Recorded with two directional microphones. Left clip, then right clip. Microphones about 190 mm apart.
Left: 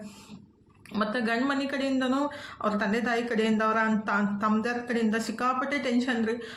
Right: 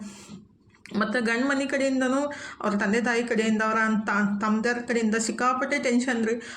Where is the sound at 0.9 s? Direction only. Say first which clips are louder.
Right 3 dB; 20° right (ahead or behind).